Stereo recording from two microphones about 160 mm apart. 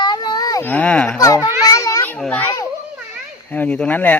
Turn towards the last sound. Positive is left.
turn(degrees=10)  # may be behind; listen again after turning